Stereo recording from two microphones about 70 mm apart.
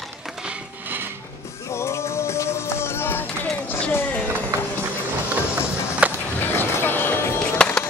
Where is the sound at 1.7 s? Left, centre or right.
Left.